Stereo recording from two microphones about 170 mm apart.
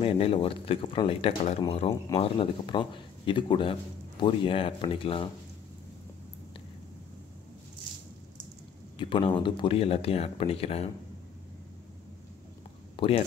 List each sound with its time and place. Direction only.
0.0 s speech: 35° left (ahead or behind)
8.9 s speech: 30° left (ahead or behind)
12.9 s a sound: 35° left (ahead or behind)